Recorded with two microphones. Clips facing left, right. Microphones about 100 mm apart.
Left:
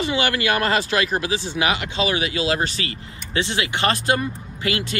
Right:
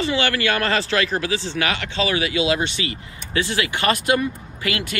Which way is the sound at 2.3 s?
35° left (ahead or behind).